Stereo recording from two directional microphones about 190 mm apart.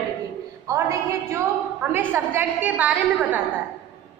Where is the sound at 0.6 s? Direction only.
15° right (ahead or behind).